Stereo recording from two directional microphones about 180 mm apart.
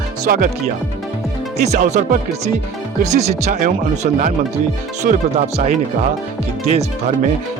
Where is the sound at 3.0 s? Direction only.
40° right (ahead or behind).